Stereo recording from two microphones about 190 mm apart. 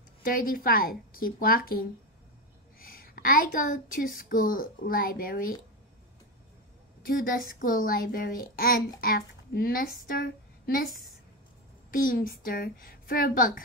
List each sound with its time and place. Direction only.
0.2 s a woman's voice: 50° left (ahead or behind)
7.0 s a woman's voice: 50° left (ahead or behind)
11.9 s a woman's voice: 45° left (ahead or behind)